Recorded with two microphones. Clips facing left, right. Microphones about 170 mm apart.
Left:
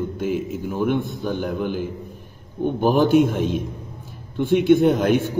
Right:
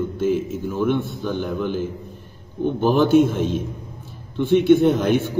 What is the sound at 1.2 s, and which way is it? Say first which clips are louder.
Speech: right 1 dB; 45° left (ahead or behind).